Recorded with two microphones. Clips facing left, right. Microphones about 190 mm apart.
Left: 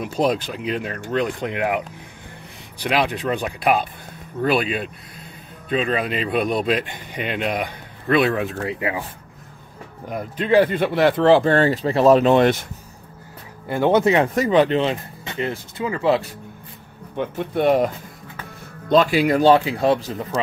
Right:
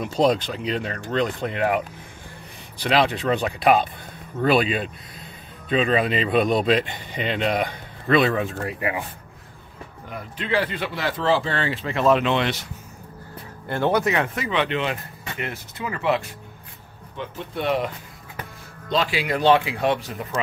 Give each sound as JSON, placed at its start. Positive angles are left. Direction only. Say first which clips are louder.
{"t": 0.0, "sound": "speech", "louder": "right 1 dB", "side_deg": 10}
{"t": 8.4, "sound": "speech", "louder": "left 2 dB", "side_deg": 20}
{"t": 10.0, "sound": "speech", "louder": "left 7 dB", "side_deg": 45}
{"t": 13.7, "sound": "speech", "louder": "left 5 dB", "side_deg": 15}
{"t": 14.3, "sound": "speech", "louder": "left 8 dB", "side_deg": 40}
{"t": 17.2, "sound": "speech", "louder": "left 8 dB", "side_deg": 50}